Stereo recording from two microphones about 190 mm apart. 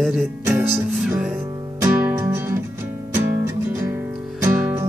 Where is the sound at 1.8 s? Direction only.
10° right (ahead or behind).